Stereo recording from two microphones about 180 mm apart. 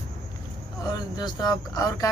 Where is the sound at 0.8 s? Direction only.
20° left (ahead or behind).